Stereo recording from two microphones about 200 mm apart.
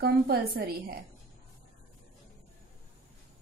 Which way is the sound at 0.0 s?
50° right (ahead or behind).